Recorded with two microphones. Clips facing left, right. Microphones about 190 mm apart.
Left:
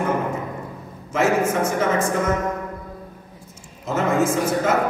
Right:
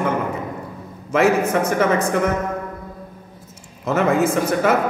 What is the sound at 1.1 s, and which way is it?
Speech, 60° right (ahead or behind).